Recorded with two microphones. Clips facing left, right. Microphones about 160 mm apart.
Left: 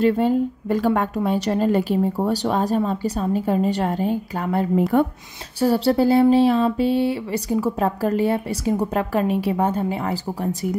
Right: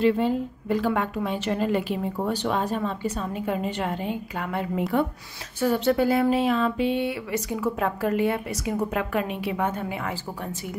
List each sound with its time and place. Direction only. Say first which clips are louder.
0.0 s a woman's voice: left 4 dB; 45° left (ahead or behind)